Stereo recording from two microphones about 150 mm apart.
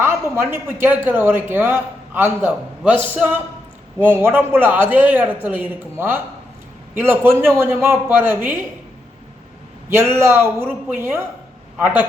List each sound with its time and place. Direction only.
0.0 s speech: 15° right (ahead or behind)
9.9 s speech: 15° right (ahead or behind)